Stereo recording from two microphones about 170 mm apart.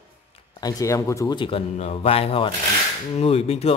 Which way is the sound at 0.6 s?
20° left (ahead or behind).